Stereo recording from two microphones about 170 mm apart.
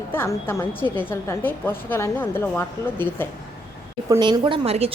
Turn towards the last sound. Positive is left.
turn(degrees=-35)  # may be behind; listen again after turning